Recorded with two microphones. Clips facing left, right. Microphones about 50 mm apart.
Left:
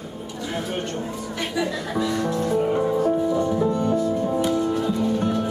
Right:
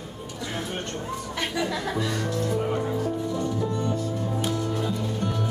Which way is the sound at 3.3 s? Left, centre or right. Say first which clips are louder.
Left 6 dB; centre.